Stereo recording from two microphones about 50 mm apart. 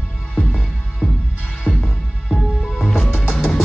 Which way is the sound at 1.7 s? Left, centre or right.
Centre.